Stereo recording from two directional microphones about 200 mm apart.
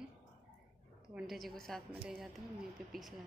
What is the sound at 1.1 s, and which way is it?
A woman's voice, centre (ahead or behind).